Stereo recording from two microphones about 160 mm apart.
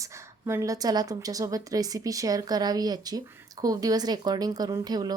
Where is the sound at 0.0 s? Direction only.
20° right (ahead or behind).